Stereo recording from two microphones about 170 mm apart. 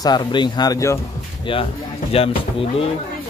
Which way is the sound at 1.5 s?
30° left (ahead or behind).